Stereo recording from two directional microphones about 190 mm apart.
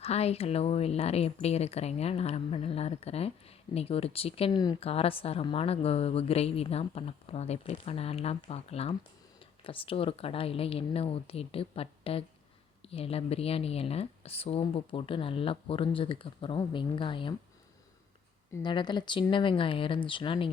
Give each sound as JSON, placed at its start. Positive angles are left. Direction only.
{"t": 0.0, "sound": "speech", "side_deg": 35}
{"t": 4.9, "sound": "speech", "side_deg": 30}
{"t": 18.5, "sound": "speech", "side_deg": 25}